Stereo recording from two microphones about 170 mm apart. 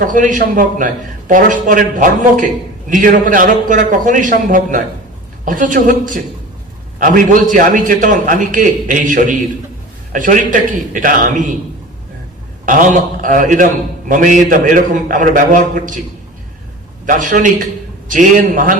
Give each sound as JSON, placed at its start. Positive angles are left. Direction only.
{"t": 0.0, "sound": "a man's voice", "side_deg": -50}
{"t": 12.6, "sound": "a man's voice", "side_deg": -50}
{"t": 17.1, "sound": "a man's voice", "side_deg": -50}